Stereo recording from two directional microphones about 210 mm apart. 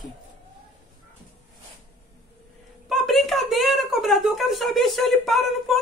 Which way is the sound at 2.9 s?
Centre (ahead or behind).